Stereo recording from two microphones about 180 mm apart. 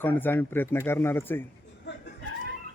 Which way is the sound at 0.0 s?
10° left (ahead or behind).